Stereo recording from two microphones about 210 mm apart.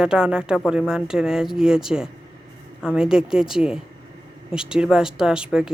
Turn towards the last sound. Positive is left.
turn(degrees=-5)  # may be behind; listen again after turning